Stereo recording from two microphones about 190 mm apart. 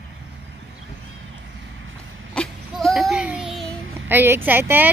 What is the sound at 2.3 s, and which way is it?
Child singing, 5° left (ahead or behind).